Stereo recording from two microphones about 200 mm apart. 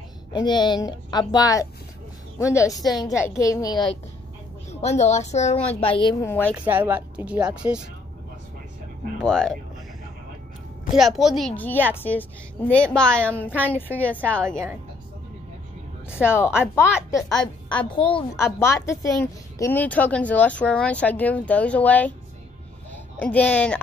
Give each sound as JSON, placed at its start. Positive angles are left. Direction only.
{"t": 0.3, "sound": "a woman's voice", "side_deg": 20}
{"t": 4.6, "sound": "a woman's voice", "side_deg": 35}
{"t": 6.2, "sound": "speech", "side_deg": 10}
{"t": 6.5, "sound": "speech", "side_deg": -10}
{"t": 9.2, "sound": "speech", "side_deg": 5}
{"t": 11.0, "sound": "speech", "side_deg": 0}
{"t": 16.2, "sound": "a woman's voice", "side_deg": 10}
{"t": 17.8, "sound": "a woman's voice", "side_deg": 25}
{"t": 18.3, "sound": "speech", "side_deg": 15}
{"t": 23.1, "sound": "speech", "side_deg": 5}